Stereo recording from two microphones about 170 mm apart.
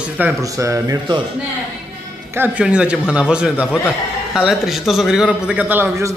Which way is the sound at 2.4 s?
5° right (ahead or behind).